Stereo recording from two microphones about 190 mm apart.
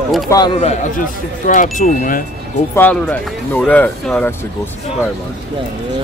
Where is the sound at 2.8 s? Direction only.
10° left (ahead or behind).